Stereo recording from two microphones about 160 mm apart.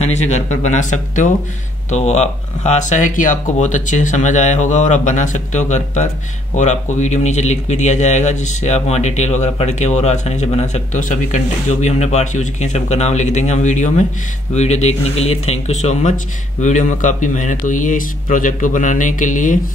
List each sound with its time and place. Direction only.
0.0 s speech: 45° left (ahead or behind)